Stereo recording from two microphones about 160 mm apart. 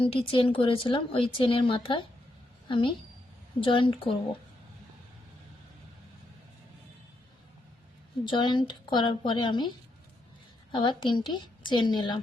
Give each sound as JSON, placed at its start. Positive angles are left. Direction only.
{"t": 0.0, "sound": "a woman's voice", "side_deg": 35}
{"t": 8.2, "sound": "a woman's voice", "side_deg": 30}
{"t": 10.7, "sound": "a woman's voice", "side_deg": 30}